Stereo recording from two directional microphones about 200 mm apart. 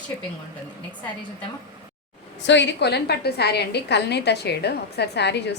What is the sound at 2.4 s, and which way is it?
A woman's voice, 65° left (ahead or behind).